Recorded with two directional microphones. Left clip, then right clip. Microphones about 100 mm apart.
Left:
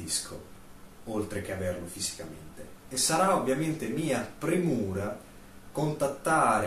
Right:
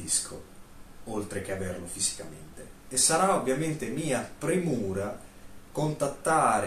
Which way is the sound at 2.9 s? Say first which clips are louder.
Right 1 dB; 25° right (ahead or behind).